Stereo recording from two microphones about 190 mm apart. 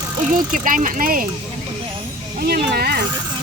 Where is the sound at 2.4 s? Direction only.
55° right (ahead or behind).